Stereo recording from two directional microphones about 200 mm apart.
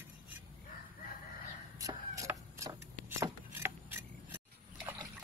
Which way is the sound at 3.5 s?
10° right (ahead or behind).